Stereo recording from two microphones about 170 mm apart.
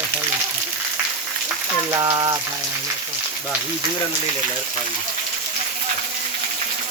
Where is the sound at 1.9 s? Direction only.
20° right (ahead or behind).